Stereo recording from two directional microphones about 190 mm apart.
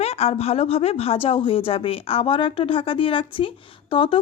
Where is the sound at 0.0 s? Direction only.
35° left (ahead or behind).